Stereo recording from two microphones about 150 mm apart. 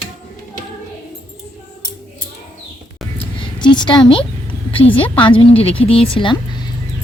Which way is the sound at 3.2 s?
30° left (ahead or behind).